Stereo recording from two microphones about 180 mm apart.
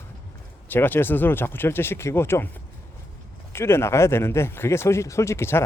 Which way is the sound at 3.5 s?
15° left (ahead or behind).